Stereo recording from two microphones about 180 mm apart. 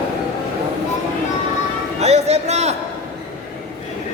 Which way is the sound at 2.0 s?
35° right (ahead or behind).